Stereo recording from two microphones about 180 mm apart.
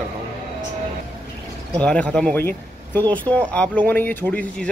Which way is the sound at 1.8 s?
5° left (ahead or behind).